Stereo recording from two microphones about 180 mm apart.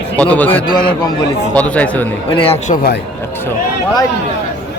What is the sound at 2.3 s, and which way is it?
Speech, 30° left (ahead or behind).